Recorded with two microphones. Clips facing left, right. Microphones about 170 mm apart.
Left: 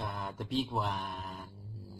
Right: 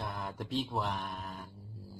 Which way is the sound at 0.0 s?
Centre (ahead or behind).